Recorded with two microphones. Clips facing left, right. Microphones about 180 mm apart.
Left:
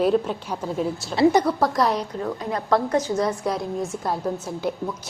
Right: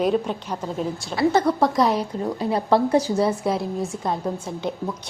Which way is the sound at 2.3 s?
30° right (ahead or behind).